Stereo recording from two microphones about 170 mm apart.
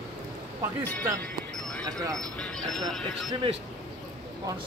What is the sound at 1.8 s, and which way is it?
Speech, 20° right (ahead or behind).